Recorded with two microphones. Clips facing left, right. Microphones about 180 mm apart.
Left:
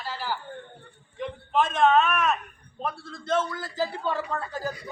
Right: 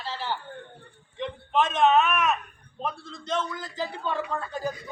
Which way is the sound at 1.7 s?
20° right (ahead or behind).